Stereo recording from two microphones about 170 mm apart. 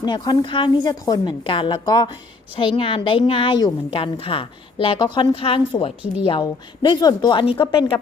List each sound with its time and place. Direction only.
0.0 s a woman's voice: 25° left (ahead or behind)